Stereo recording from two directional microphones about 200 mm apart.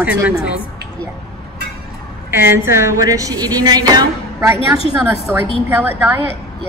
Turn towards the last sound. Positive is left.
turn(degrees=-10)  # may be behind; listen again after turning